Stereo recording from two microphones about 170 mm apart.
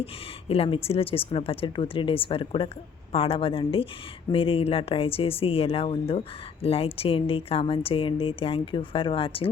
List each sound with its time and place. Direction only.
0.0 s speech: 35° left (ahead or behind)